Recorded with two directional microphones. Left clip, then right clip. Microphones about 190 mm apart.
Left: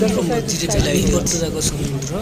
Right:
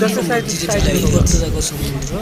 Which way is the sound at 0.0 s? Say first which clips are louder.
Right 2 dB; centre (ahead or behind).